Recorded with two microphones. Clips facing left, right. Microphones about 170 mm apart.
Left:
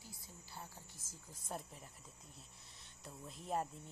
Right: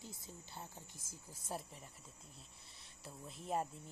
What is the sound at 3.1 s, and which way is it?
Speech, centre (ahead or behind).